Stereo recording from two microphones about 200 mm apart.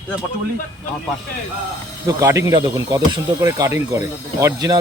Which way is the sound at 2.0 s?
15° right (ahead or behind).